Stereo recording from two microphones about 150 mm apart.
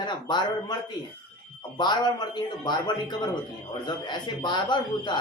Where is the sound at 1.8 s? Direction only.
30° left (ahead or behind).